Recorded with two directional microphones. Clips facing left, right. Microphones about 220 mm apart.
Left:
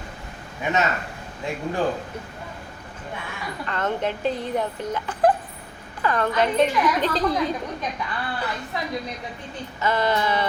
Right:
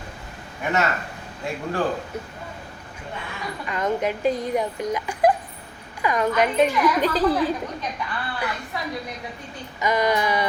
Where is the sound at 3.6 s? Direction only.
10° right (ahead or behind).